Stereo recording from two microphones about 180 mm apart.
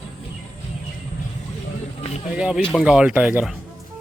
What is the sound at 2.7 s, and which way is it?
Speech, 5° right (ahead or behind).